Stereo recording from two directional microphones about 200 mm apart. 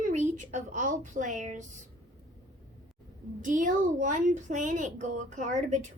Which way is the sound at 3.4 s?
40° right (ahead or behind).